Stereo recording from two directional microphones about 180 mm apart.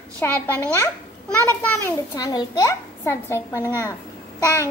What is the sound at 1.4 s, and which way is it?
A child's voice, 10° left (ahead or behind).